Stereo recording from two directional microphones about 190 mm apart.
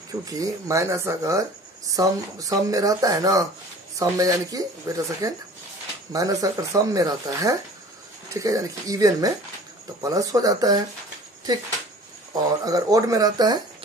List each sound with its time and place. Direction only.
0.1 s speech: 20° right (ahead or behind)
12.6 s speech: 20° right (ahead or behind)